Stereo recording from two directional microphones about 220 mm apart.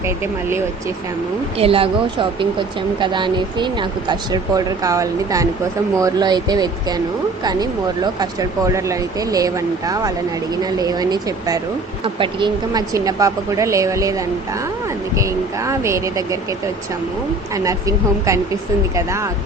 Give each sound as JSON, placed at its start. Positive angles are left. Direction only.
{"t": 1.5, "sound": "speech", "side_deg": -25}
{"t": 17.5, "sound": "speech", "side_deg": -15}